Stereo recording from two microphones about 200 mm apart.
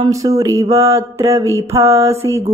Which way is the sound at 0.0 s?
15° right (ahead or behind).